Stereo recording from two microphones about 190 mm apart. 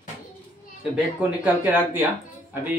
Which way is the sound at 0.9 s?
10° right (ahead or behind).